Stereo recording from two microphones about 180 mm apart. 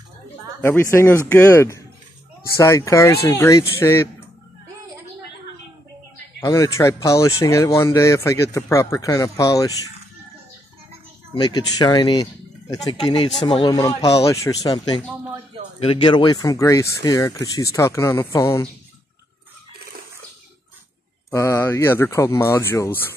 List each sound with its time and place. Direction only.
0.6 s speech: 15° left (ahead or behind)
6.4 s speech: 20° left (ahead or behind)
11.4 s speech: 25° left (ahead or behind)
21.3 s speech: 15° left (ahead or behind)